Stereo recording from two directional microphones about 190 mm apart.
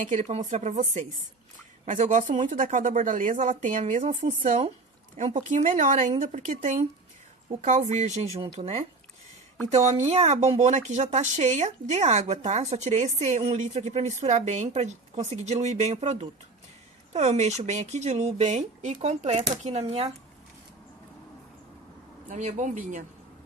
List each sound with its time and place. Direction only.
0.0 s speech: 35° right (ahead or behind)
22.3 s speech: 40° right (ahead or behind)